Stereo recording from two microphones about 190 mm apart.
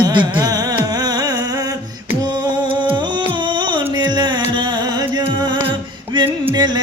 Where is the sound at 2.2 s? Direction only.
20° right (ahead or behind).